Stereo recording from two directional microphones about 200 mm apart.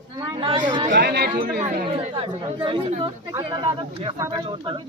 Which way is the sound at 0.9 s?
50° right (ahead or behind).